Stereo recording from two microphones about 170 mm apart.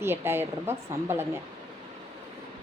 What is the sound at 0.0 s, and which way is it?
A woman's voice, 15° right (ahead or behind).